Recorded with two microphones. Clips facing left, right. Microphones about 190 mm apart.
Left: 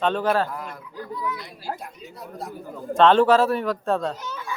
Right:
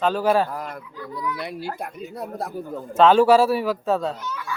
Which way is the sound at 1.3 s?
65° right (ahead or behind).